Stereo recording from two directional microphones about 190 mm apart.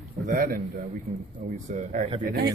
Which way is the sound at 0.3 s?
50° right (ahead or behind).